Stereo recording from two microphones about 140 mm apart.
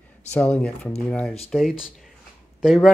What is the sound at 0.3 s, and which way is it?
Speech, 10° left (ahead or behind).